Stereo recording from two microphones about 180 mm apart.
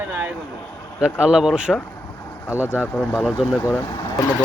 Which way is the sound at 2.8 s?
5° left (ahead or behind).